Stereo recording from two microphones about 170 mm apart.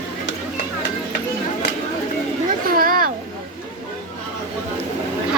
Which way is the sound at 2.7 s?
60° right (ahead or behind).